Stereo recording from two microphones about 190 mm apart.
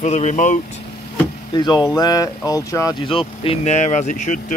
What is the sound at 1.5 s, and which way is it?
Speech, 20° left (ahead or behind).